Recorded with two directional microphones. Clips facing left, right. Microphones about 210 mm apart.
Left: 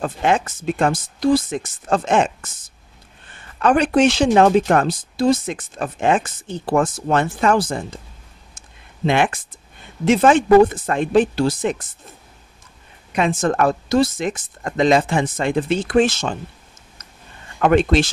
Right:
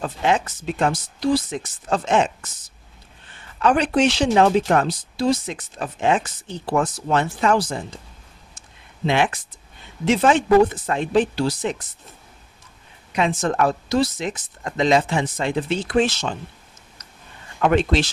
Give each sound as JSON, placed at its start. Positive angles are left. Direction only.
{"t": 0.0, "sound": "speech", "side_deg": 50}
{"t": 8.5, "sound": "a sound", "side_deg": 50}
{"t": 10.0, "sound": "speech", "side_deg": 50}
{"t": 13.1, "sound": "speech", "side_deg": 50}
{"t": 17.6, "sound": "speech", "side_deg": 50}